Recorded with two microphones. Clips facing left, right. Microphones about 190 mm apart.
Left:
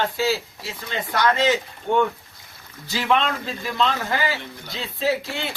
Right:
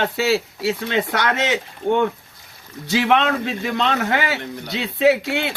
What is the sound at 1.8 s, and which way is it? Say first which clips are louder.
Speech: right 2 dB; 55° right (ahead or behind).